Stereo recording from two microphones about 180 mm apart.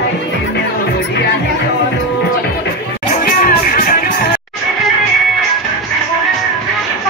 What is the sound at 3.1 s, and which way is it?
Music, 50° left (ahead or behind).